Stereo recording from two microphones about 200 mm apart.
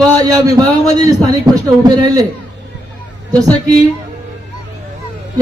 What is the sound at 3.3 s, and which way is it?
Speech, 15° right (ahead or behind).